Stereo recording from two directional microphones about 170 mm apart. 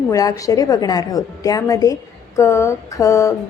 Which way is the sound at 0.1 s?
20° left (ahead or behind).